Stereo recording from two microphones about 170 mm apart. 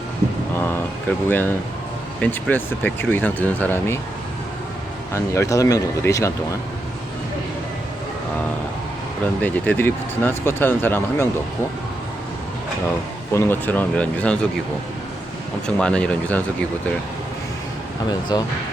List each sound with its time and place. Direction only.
1.3 s speech: 10° left (ahead or behind)
5.1 s speech: 15° left (ahead or behind)
9.2 s speech: 10° left (ahead or behind)
13.3 s speech: 15° left (ahead or behind)
15.6 s speech: 5° left (ahead or behind)
18.1 s speech: 25° left (ahead or behind)